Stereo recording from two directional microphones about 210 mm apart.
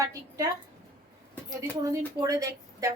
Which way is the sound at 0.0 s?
15° right (ahead or behind).